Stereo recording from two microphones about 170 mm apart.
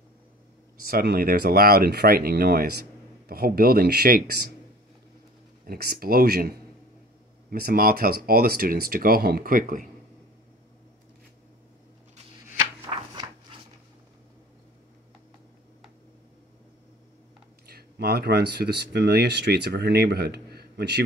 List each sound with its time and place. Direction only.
0.8 s speech: 60° right (ahead or behind)
5.7 s speech: 65° right (ahead or behind)
12.9 s shuffling cards: 20° right (ahead or behind)
17.6 s speech: 65° right (ahead or behind)